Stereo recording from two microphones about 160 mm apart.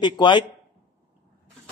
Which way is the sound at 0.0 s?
30° left (ahead or behind).